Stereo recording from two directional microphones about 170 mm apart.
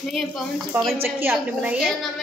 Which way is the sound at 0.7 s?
15° right (ahead or behind).